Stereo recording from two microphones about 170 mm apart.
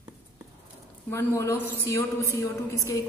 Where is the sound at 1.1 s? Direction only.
15° left (ahead or behind).